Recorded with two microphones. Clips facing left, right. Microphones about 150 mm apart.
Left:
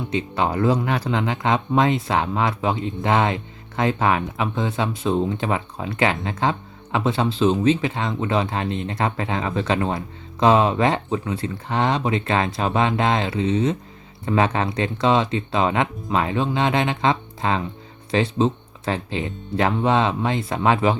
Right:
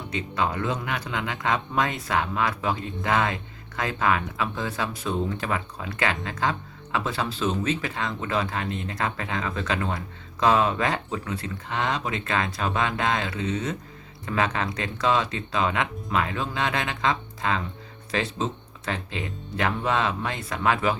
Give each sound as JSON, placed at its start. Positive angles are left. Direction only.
{"t": 0.1, "sound": "speech", "side_deg": 30}